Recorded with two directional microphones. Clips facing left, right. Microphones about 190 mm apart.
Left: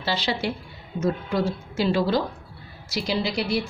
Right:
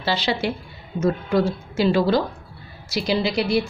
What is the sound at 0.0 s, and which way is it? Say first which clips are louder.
A woman's voice: right 3 dB; 75° right (ahead or behind).